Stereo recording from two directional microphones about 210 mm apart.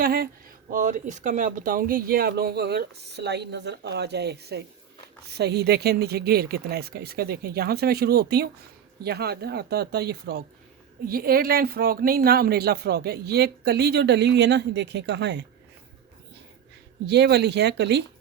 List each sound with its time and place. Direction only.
0.0 s speech: 45° right (ahead or behind)
17.1 s speech: 50° right (ahead or behind)